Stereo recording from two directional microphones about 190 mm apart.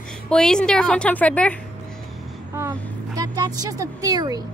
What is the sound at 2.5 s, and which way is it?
A woman's voice, 15° right (ahead or behind).